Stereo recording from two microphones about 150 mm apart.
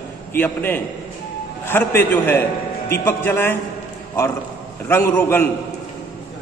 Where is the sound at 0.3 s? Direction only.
15° left (ahead or behind).